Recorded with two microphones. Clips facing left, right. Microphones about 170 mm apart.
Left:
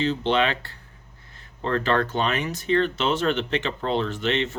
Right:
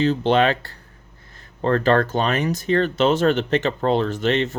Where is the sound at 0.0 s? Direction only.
45° right (ahead or behind).